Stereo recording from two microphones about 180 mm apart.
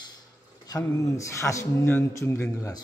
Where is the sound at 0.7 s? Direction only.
20° left (ahead or behind).